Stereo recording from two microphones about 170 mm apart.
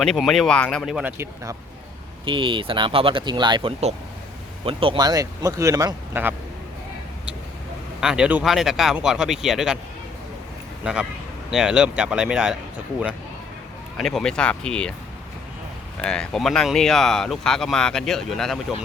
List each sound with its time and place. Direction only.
0.0 s speech: centre (ahead or behind)
2.2 s speech: 30° right (ahead or behind)
8.0 s speech: 5° right (ahead or behind)
10.8 s speech: 5° right (ahead or behind)
14.0 s speech: 5° left (ahead or behind)
16.0 s speech: 5° left (ahead or behind)